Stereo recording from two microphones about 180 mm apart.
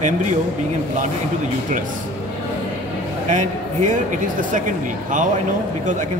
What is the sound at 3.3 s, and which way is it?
Speech, 40° right (ahead or behind).